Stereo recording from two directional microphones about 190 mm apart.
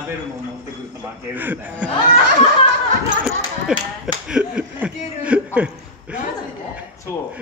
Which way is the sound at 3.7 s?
5° right (ahead or behind).